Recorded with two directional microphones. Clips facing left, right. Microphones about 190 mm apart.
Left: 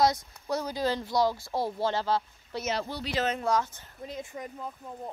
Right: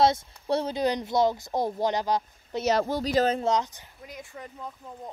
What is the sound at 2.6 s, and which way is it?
Speech, 45° right (ahead or behind).